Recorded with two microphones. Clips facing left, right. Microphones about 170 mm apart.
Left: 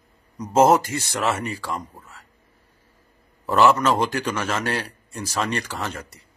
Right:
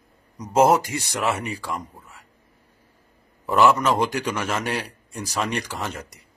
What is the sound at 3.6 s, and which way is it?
Speech, 10° right (ahead or behind).